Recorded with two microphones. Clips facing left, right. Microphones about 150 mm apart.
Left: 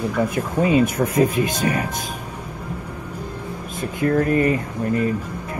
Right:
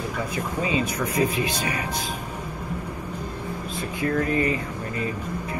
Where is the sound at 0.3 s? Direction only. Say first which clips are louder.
Left 5 dB; 55° left (ahead or behind).